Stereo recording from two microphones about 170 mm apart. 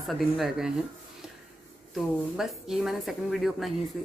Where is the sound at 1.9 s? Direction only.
Centre (ahead or behind).